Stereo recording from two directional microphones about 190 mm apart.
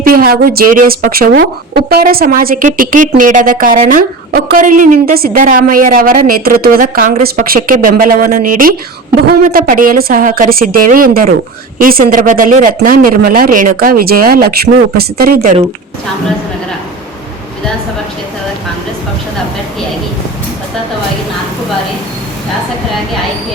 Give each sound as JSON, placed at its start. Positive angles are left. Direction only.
{"t": 0.0, "sound": "a woman's voice", "side_deg": -50}